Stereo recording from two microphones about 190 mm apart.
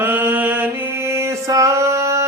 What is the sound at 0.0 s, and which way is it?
Music, 10° right (ahead or behind).